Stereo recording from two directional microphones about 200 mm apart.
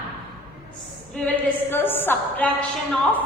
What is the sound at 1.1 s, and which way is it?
A woman's voice, 5° left (ahead or behind).